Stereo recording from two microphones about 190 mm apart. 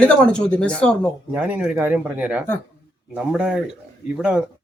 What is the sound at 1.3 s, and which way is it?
Speech, 10° right (ahead or behind).